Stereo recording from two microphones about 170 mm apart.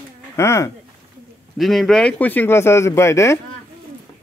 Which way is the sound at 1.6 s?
Centre (ahead or behind).